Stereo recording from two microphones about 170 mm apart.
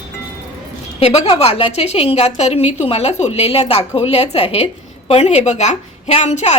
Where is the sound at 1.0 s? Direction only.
40° left (ahead or behind).